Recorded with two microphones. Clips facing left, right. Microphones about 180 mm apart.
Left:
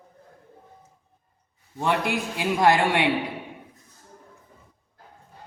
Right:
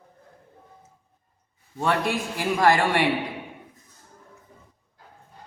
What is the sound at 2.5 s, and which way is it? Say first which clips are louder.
Speech: even; 20° left (ahead or behind).